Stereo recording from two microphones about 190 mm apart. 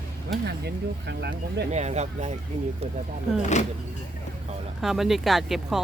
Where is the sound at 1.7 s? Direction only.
35° right (ahead or behind).